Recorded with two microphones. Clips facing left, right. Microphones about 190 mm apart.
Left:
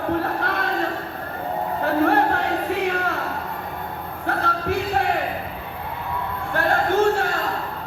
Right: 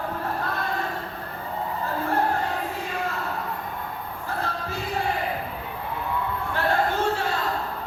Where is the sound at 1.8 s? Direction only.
70° left (ahead or behind).